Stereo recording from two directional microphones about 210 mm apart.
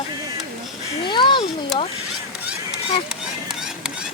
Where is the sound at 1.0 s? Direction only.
20° left (ahead or behind).